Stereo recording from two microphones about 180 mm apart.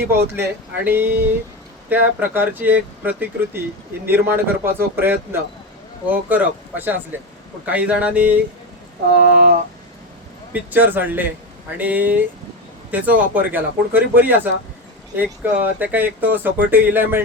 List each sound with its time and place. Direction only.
0.0 s speech: 10° right (ahead or behind)
9.1 s speech: 55° right (ahead or behind)
10.5 s speech: 10° right (ahead or behind)